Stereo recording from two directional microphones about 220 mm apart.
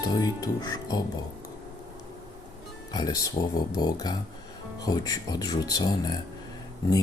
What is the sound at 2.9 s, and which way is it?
Speech, 20° left (ahead or behind).